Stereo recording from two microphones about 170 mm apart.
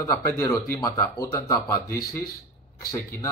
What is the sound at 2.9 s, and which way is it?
Speech, 20° left (ahead or behind).